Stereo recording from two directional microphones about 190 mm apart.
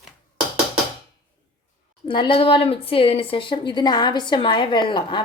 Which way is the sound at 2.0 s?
25° left (ahead or behind).